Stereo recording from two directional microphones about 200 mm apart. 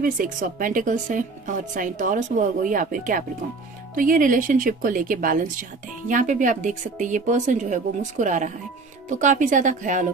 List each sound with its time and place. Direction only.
0.0 s speech: 45° right (ahead or behind)